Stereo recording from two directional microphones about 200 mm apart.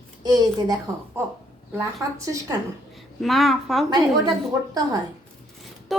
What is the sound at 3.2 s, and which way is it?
Speech, centre (ahead or behind).